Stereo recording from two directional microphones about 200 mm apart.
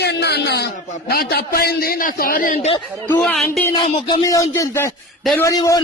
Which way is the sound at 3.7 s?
25° left (ahead or behind).